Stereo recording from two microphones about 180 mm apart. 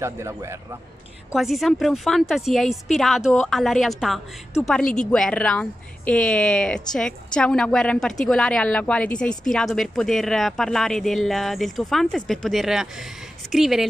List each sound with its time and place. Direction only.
0.0 s a man's voice: 15° right (ahead or behind)
1.3 s a woman's voice: centre (ahead or behind)